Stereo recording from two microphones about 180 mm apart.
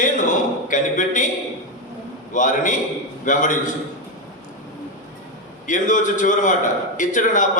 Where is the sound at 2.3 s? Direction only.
45° left (ahead or behind).